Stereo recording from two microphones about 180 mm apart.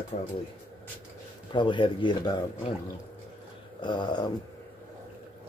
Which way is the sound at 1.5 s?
25° left (ahead or behind).